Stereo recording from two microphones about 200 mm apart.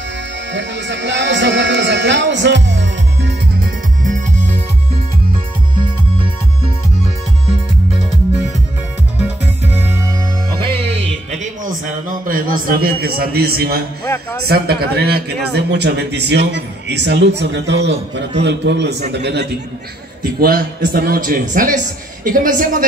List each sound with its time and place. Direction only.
0.5 s speech: 65° right (ahead or behind)
4.0 s music: 40° right (ahead or behind)
9.2 s music: 10° right (ahead or behind)
10.6 s music: 30° right (ahead or behind)
11.6 s a man's voice: 40° right (ahead or behind)